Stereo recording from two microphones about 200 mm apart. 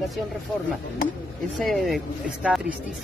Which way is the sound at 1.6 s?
Centre (ahead or behind).